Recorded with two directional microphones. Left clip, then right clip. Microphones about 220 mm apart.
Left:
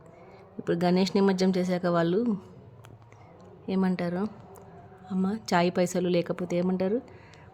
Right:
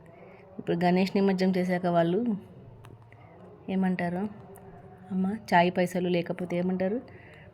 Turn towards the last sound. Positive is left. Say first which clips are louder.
# left 2 dB
turn(degrees=25)  # may be behind; listen again after turning